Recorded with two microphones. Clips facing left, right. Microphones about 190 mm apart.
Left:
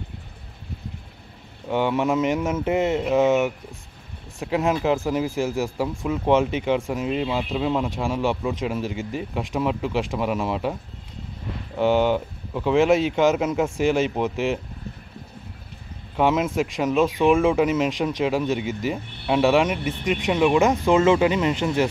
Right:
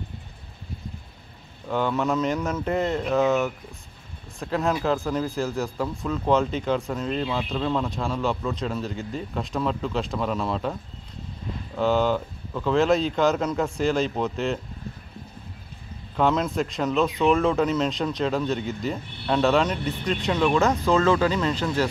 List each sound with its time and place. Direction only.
1.7 s speech: 20° left (ahead or behind)
3.2 s speech: 25° left (ahead or behind)
4.4 s speech: 10° left (ahead or behind)
16.2 s speech: 10° left (ahead or behind)